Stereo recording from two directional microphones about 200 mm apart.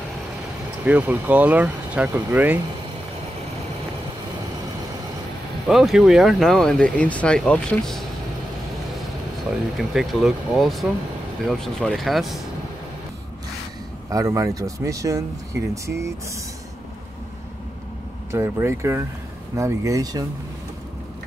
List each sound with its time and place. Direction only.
0.8 s speech: 10° right (ahead or behind)
5.7 s speech: centre (ahead or behind)
9.5 s speech: centre (ahead or behind)
14.0 s speech: 15° right (ahead or behind)
18.3 s speech: 15° right (ahead or behind)